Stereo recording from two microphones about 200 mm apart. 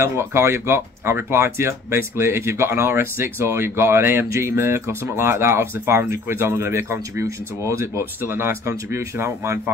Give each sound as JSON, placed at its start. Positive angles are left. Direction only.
{"t": 0.0, "sound": "speech", "side_deg": -10}